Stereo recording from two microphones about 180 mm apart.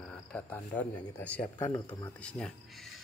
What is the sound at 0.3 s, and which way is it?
Speech, 10° left (ahead or behind).